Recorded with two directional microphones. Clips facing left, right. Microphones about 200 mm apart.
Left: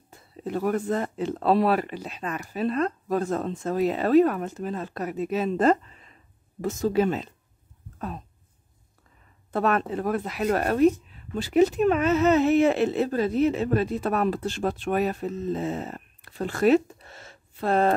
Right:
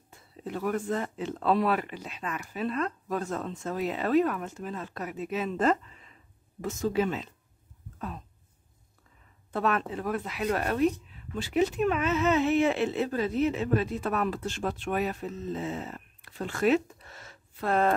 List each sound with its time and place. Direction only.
0.1 s speech: 40° left (ahead or behind)
9.5 s speech: 45° left (ahead or behind)